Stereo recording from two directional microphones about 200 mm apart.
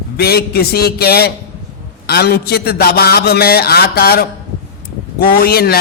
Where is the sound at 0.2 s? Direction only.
50° left (ahead or behind).